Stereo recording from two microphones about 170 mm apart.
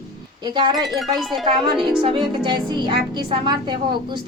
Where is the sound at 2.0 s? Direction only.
30° right (ahead or behind).